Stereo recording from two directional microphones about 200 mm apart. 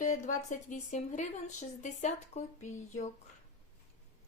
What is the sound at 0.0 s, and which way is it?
Speech, 40° left (ahead or behind).